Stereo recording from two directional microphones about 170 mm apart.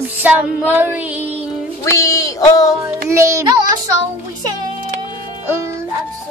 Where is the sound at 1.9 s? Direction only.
20° left (ahead or behind).